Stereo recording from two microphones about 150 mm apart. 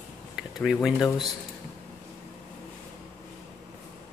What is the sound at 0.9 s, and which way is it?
Speech, 25° left (ahead or behind).